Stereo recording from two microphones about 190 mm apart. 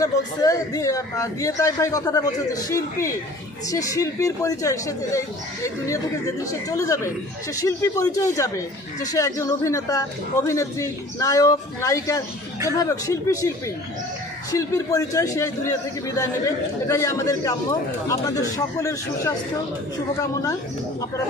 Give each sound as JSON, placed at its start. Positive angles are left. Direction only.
{"t": 0.0, "sound": "a man's voice", "side_deg": 20}
{"t": 6.7, "sound": "a man's voice", "side_deg": 15}
{"t": 14.5, "sound": "a man's voice", "side_deg": 15}